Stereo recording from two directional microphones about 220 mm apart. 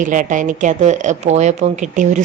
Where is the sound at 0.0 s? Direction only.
35° right (ahead or behind).